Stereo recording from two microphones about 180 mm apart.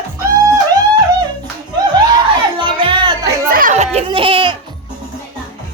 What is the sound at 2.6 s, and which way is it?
Music, 25° right (ahead or behind).